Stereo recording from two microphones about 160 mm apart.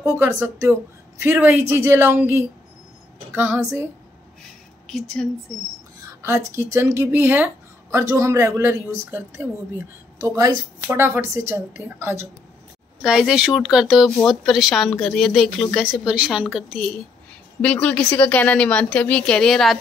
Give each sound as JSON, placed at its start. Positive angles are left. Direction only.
{"t": 0.0, "sound": "a woman's voice", "side_deg": -15}
{"t": 4.8, "sound": "speech", "side_deg": 5}
{"t": 6.2, "sound": "a woman's voice", "side_deg": -15}
{"t": 13.0, "sound": "a woman's voice", "side_deg": 0}